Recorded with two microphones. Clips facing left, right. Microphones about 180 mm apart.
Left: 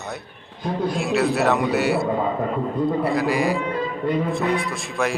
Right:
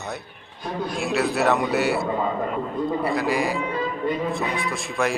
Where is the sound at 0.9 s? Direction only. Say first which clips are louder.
Left 1 dB; centre (ahead or behind).